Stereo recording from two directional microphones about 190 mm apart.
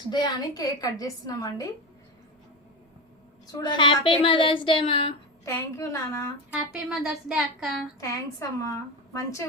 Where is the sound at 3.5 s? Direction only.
20° left (ahead or behind).